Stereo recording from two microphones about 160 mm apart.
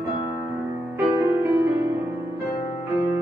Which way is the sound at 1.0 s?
15° right (ahead or behind).